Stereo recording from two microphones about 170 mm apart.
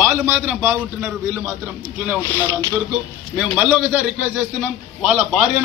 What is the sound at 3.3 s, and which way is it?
A man's voice, 5° right (ahead or behind).